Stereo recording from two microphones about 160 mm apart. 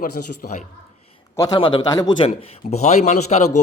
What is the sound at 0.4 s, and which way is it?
Speech, 60° left (ahead or behind).